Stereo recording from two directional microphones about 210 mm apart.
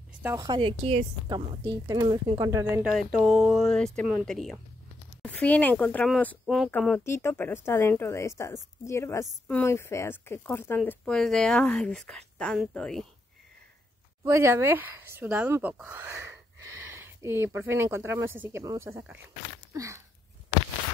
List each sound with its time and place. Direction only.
0.2 s a woman's voice: 15° right (ahead or behind)
2.8 s a woman's voice: centre (ahead or behind)
14.2 s speech: 15° right (ahead or behind)
19.7 s a sound: 15° right (ahead or behind)